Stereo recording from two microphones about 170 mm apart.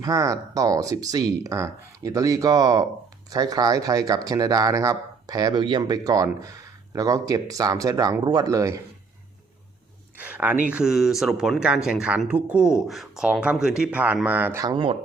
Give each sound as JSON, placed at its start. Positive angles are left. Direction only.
{"t": 0.0, "sound": "speech", "side_deg": -20}
{"t": 10.2, "sound": "speech", "side_deg": -10}